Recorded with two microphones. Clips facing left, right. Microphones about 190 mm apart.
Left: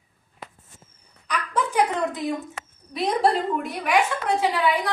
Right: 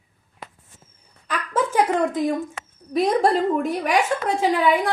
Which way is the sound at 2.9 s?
45° right (ahead or behind).